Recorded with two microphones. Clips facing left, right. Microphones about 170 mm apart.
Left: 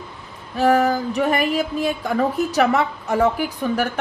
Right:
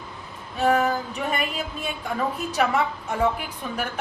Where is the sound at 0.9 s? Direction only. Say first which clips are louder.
Left 7 dB; 70° left (ahead or behind).